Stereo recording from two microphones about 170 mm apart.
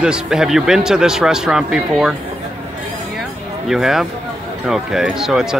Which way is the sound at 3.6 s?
Centre (ahead or behind).